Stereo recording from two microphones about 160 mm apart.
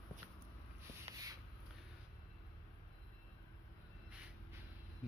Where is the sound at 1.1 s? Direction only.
40° right (ahead or behind).